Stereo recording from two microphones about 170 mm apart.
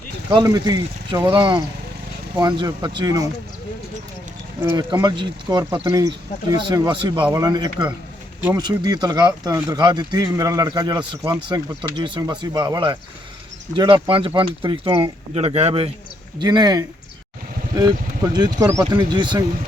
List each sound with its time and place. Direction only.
0.3 s speech: 25° right (ahead or behind)
4.6 s speech: 25° right (ahead or behind)
16.4 s speech: 25° right (ahead or behind)
18.3 s speech: 25° right (ahead or behind)